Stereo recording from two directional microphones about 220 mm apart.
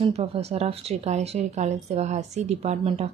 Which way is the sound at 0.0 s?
25° right (ahead or behind).